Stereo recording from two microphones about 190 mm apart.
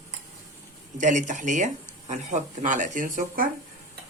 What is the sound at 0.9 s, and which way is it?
Speech, 40° right (ahead or behind).